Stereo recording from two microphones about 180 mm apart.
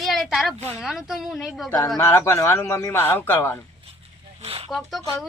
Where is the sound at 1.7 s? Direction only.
20° left (ahead or behind).